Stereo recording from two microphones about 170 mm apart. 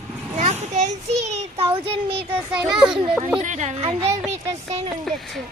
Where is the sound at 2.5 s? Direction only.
5° right (ahead or behind).